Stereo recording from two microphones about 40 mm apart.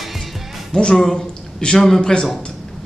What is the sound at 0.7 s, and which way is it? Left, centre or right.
A man's voice, left.